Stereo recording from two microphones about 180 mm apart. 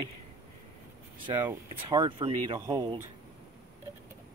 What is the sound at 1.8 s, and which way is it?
Speech, 25° right (ahead or behind).